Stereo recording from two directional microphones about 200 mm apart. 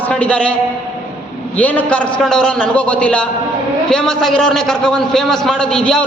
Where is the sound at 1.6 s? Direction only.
5° left (ahead or behind).